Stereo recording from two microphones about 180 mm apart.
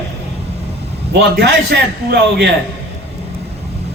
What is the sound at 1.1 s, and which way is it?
A man's voice, 65° right (ahead or behind).